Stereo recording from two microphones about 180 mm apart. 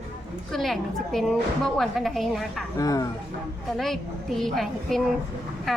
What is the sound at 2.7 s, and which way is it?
Speech, 20° left (ahead or behind).